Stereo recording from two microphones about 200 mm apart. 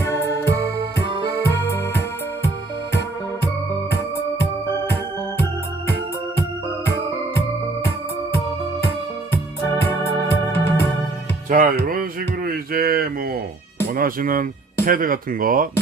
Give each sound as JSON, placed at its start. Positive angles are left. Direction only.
{"t": 0.0, "sound": "music", "side_deg": 10}
{"t": 9.8, "sound": "organ", "side_deg": 10}
{"t": 11.4, "sound": "music", "side_deg": -40}
{"t": 13.9, "sound": "speech", "side_deg": -45}